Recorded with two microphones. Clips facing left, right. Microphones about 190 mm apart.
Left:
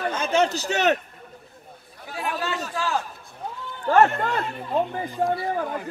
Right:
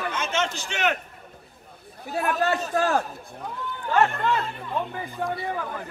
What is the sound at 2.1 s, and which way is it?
Speech, 50° right (ahead or behind).